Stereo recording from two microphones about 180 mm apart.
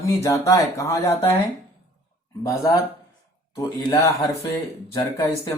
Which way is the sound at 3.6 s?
20° left (ahead or behind).